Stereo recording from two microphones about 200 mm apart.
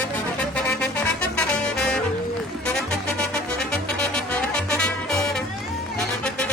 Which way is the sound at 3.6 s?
5° left (ahead or behind).